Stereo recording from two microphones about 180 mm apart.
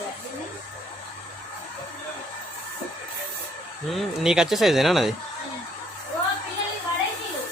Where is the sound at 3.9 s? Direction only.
Centre (ahead or behind).